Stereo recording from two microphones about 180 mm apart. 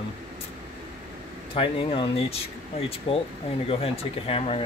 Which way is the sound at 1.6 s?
30° left (ahead or behind).